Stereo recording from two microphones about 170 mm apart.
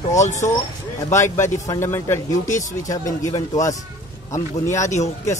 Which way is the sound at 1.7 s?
15° left (ahead or behind).